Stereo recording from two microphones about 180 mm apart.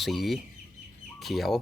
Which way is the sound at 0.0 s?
Centre (ahead or behind).